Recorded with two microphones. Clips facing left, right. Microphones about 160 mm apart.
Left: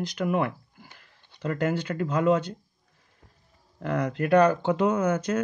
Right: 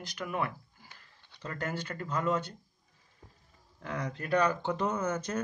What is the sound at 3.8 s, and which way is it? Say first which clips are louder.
Speech: left 10 dB; 70° left (ahead or behind).